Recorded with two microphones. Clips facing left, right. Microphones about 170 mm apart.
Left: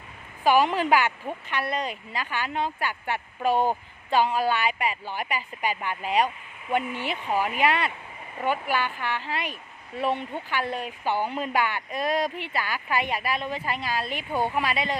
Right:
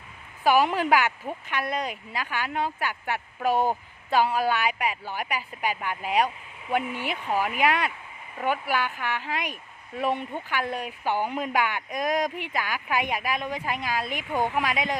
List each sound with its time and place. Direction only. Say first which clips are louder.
0.4 s speech: even; 10° right (ahead or behind)
7.3 s speech: even; 15° left (ahead or behind)
7.5 s speech: even; 10° right (ahead or behind)